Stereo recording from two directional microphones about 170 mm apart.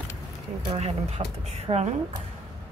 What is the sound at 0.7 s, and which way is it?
A woman's voice, 35° right (ahead or behind).